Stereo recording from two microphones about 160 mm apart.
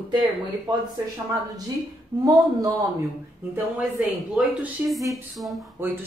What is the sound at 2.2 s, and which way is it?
Speech, 25° right (ahead or behind).